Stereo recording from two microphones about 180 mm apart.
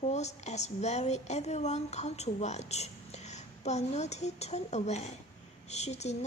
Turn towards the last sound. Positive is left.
turn(degrees=40)  # may be behind; listen again after turning